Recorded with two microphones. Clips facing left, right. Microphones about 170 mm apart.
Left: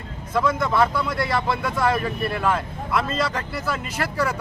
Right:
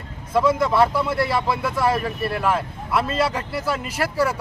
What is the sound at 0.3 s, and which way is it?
Speech, 5° right (ahead or behind).